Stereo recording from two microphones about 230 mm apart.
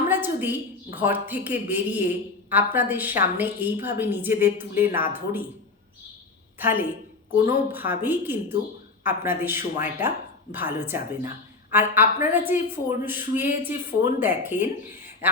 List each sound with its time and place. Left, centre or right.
0.1 s a woman's voice: centre
6.6 s a woman's voice: centre